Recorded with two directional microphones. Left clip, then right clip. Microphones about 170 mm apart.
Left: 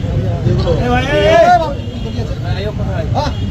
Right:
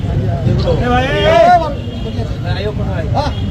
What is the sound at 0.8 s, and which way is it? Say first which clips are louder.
Vehicle: left 1 dB; 55° left (ahead or behind).